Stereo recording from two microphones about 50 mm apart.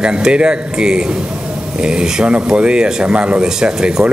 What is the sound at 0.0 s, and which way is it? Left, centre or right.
A man's voice, centre.